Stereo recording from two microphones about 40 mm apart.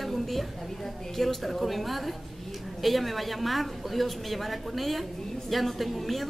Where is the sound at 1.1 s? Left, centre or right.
Centre.